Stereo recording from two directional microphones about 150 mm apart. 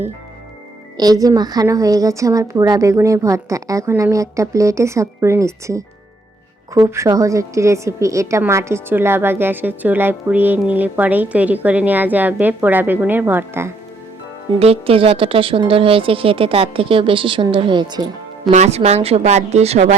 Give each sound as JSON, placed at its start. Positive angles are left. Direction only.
{"t": 0.9, "sound": "a woman's voice", "side_deg": -25}
{"t": 14.6, "sound": "speech", "side_deg": -40}
{"t": 18.5, "sound": "a woman's voice", "side_deg": -45}